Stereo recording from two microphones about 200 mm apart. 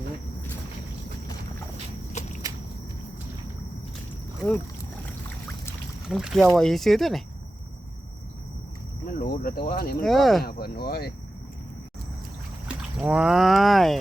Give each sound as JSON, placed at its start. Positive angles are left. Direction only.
{"t": 2.2, "sound": "walk", "side_deg": 35}
{"t": 6.1, "sound": "speech", "side_deg": 0}
{"t": 9.1, "sound": "speech", "side_deg": 45}
{"t": 10.0, "sound": "speech", "side_deg": 0}
{"t": 10.4, "sound": "speech", "side_deg": 50}
{"t": 12.6, "sound": "speech", "side_deg": -5}